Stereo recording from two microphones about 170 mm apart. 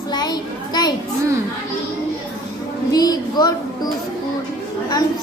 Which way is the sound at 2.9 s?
25° left (ahead or behind).